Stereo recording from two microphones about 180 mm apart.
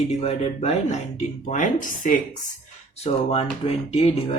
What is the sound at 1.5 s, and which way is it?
Speech, 45° left (ahead or behind).